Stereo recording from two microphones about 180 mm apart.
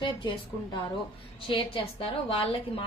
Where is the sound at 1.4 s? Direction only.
30° left (ahead or behind).